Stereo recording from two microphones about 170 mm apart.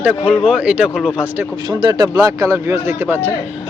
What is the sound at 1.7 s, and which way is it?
Speech, 25° right (ahead or behind).